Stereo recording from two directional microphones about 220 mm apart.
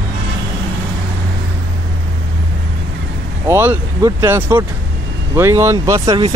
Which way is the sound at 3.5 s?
10° right (ahead or behind).